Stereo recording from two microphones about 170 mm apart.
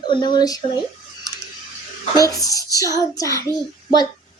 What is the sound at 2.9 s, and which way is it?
Speech, 20° left (ahead or behind).